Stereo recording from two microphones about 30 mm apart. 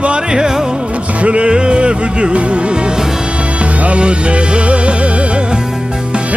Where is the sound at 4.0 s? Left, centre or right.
Right.